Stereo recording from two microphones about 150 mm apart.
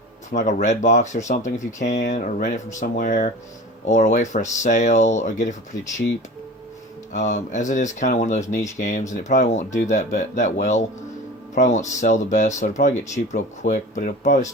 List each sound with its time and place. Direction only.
0.3 s speech: 55° left (ahead or behind)
7.1 s speech: 55° left (ahead or behind)